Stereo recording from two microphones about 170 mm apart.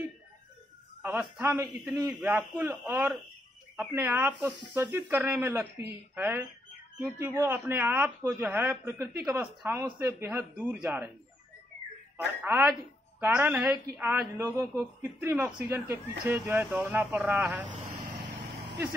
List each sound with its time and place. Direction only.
1.0 s speech: 10° right (ahead or behind)
12.4 s speech: 15° right (ahead or behind)
18.0 s vehicle: 75° right (ahead or behind)